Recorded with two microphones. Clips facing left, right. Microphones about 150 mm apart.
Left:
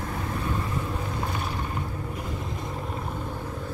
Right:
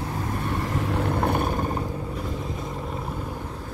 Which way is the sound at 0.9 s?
60° right (ahead or behind).